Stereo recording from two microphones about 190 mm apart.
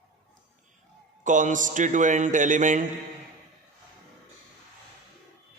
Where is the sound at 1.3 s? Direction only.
40° right (ahead or behind).